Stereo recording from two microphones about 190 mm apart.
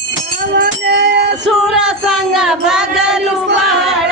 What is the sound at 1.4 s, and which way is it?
Music, 5° right (ahead or behind).